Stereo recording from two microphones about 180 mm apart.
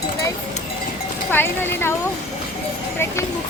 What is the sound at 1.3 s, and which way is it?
Speech, 10° left (ahead or behind).